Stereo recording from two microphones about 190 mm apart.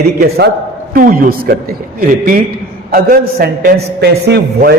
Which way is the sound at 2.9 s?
50° right (ahead or behind).